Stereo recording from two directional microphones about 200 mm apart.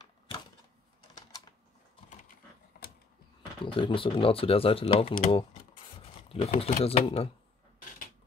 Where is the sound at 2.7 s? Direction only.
50° left (ahead or behind).